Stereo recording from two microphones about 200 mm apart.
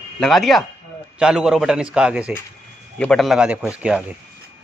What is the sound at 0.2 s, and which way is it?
A man's voice, centre (ahead or behind).